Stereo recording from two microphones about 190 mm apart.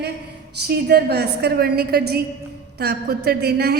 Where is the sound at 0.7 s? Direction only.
55° right (ahead or behind).